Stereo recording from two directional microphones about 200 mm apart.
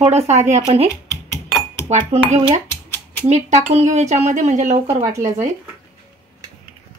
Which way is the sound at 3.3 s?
35° right (ahead or behind).